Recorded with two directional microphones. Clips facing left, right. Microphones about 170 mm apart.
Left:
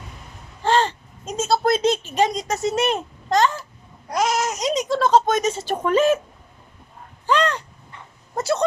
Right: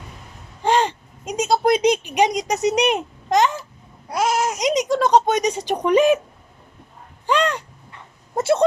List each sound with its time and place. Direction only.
0.6 s a sound: 15° right (ahead or behind)
4.1 s speech: 10° right (ahead or behind)
7.3 s speech: 10° right (ahead or behind)
8.4 s speech: 25° right (ahead or behind)